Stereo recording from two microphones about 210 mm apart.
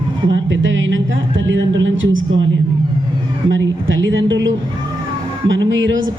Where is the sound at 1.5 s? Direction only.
60° right (ahead or behind).